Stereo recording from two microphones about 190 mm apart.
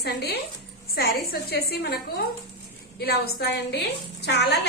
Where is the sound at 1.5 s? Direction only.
55° left (ahead or behind).